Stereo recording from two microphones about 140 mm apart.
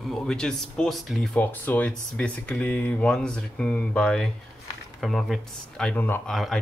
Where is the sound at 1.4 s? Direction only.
10° left (ahead or behind).